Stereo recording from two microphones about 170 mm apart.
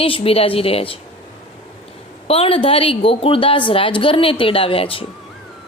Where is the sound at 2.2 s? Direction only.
35° left (ahead or behind).